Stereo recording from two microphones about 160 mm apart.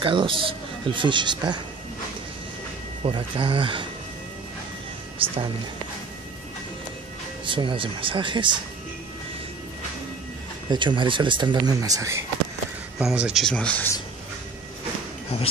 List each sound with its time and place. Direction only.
0.0 s speech: 30° right (ahead or behind)
3.0 s speech: 35° right (ahead or behind)
7.4 s speech: 30° right (ahead or behind)
10.7 s speech: 30° right (ahead or behind)
13.0 s speech: 5° right (ahead or behind)